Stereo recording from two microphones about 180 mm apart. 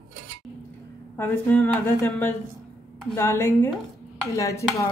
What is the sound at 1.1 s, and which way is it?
A woman's voice, 10° left (ahead or behind).